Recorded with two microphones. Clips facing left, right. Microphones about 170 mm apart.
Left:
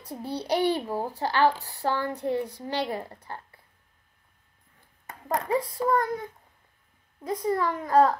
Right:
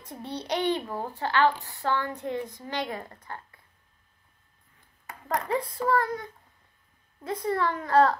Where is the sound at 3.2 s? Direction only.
25° left (ahead or behind).